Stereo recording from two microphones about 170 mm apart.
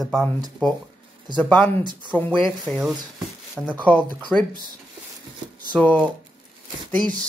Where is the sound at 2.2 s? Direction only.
10° left (ahead or behind).